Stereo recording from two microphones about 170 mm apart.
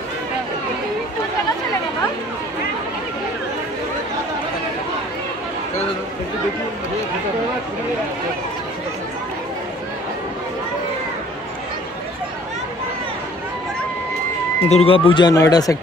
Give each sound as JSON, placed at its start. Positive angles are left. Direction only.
{"t": 14.7, "sound": "speech", "side_deg": 35}